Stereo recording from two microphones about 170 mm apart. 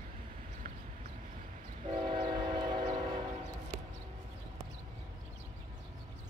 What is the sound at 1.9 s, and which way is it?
Train, 30° right (ahead or behind).